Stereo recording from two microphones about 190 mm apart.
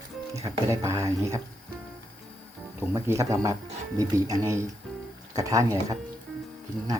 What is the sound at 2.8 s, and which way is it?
Speech, 15° right (ahead or behind).